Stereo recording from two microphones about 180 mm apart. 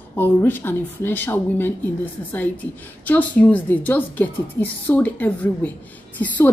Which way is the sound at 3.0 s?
10° left (ahead or behind).